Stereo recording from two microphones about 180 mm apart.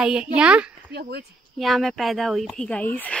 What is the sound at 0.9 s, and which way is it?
Speech, 65° right (ahead or behind).